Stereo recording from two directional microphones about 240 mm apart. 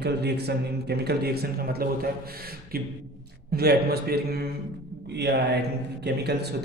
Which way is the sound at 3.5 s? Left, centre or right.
Right.